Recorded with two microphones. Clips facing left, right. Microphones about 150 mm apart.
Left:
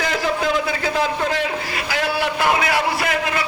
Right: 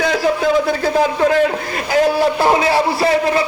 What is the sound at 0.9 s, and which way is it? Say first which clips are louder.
A man's voice: right 8 dB; 45° right (ahead or behind).